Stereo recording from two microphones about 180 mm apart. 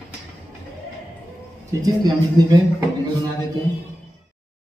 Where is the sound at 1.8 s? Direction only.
20° right (ahead or behind).